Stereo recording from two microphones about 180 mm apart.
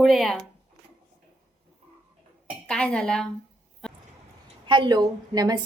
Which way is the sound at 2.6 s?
5° left (ahead or behind).